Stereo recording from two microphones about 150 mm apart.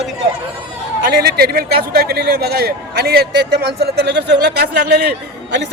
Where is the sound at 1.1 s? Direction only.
90° right.